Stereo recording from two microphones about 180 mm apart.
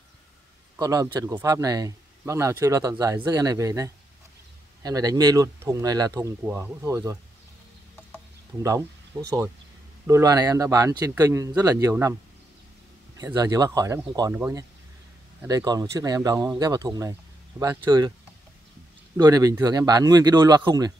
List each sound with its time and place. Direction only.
0.7 s speech: 20° right (ahead or behind)
10.0 s speech: 20° right (ahead or behind)
13.2 s speech: 20° right (ahead or behind)
19.1 s speech: 20° right (ahead or behind)